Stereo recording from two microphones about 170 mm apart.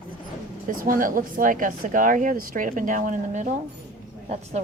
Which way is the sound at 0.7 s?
55° right (ahead or behind).